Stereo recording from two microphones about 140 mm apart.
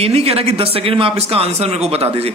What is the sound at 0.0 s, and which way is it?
Speech, 45° right (ahead or behind).